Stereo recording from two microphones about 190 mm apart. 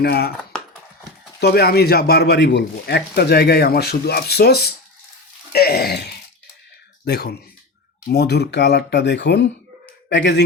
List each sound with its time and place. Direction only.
0.0 s a man's voice: 55° left (ahead or behind)
1.4 s a man's voice: 55° left (ahead or behind)